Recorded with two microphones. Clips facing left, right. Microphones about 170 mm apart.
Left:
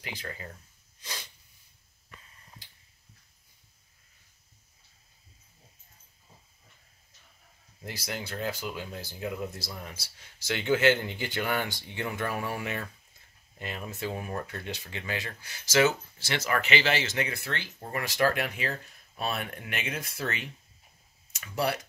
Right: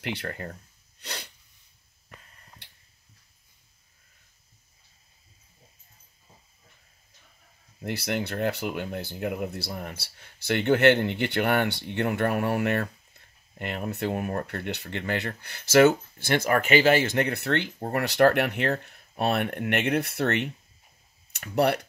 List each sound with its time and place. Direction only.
0.0 s speech: 70° right (ahead or behind)
1.0 s sneeze: 65° right (ahead or behind)
7.8 s speech: 65° right (ahead or behind)